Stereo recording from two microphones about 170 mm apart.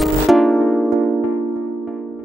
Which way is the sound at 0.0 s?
Centre (ahead or behind).